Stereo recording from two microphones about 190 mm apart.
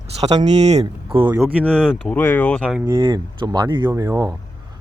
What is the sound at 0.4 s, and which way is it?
Speech, 35° right (ahead or behind).